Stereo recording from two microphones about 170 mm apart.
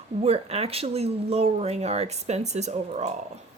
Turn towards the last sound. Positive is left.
turn(degrees=-40)  # may be behind; listen again after turning